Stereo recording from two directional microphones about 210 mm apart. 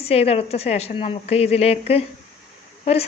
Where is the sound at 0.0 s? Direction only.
30° left (ahead or behind).